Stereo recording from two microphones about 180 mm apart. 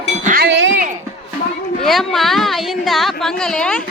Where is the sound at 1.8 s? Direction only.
Centre (ahead or behind).